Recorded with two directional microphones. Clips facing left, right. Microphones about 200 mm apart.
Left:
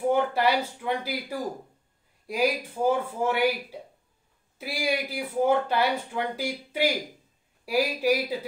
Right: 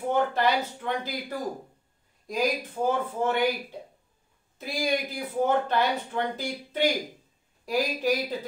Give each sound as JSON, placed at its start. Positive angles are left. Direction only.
{"t": 0.1, "sound": "speech", "side_deg": 10}
{"t": 2.2, "sound": "speech", "side_deg": 10}
{"t": 4.6, "sound": "speech", "side_deg": 10}